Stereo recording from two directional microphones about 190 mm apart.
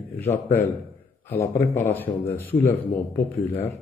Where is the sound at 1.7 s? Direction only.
10° left (ahead or behind).